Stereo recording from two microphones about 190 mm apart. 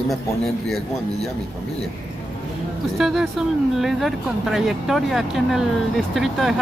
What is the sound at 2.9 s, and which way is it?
Speech, centre (ahead or behind).